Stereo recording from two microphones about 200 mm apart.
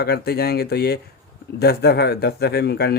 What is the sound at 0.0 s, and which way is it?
Speech, 55° left (ahead or behind).